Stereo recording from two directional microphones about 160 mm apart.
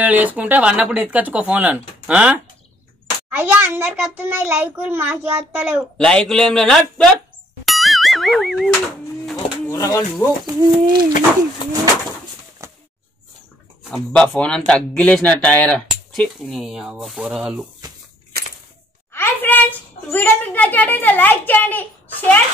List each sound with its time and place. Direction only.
0.0 s a child's voice: 10° right (ahead or behind)
5.9 s speech: 5° left (ahead or behind)
7.6 s boing: centre (ahead or behind)
9.7 s speech: 20° left (ahead or behind)
10.4 s a sound: 25° right (ahead or behind)
13.9 s a child's voice: 5° left (ahead or behind)
19.1 s a child's voice: 15° left (ahead or behind)